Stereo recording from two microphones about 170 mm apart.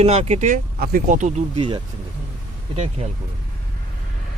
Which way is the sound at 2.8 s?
40° right (ahead or behind).